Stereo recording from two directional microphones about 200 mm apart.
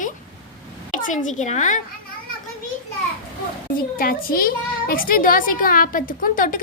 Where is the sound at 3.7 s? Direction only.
45° left (ahead or behind).